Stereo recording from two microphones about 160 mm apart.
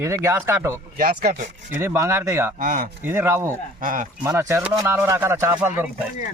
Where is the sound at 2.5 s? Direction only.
55° right (ahead or behind).